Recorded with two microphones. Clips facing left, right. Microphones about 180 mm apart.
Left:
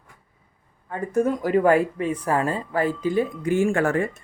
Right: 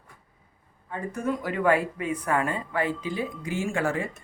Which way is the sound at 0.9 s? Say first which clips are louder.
Left 7 dB; 45° left (ahead or behind).